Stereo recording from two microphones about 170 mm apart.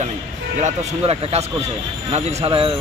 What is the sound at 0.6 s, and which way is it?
Speech, 40° right (ahead or behind).